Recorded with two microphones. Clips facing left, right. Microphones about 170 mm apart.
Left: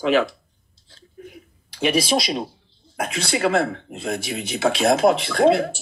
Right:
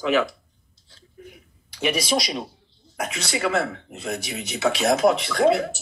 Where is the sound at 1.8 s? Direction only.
30° left (ahead or behind).